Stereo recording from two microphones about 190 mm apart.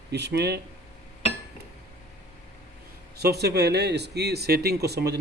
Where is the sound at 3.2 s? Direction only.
55° right (ahead or behind).